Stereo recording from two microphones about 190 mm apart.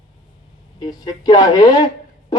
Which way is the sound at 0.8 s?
20° left (ahead or behind).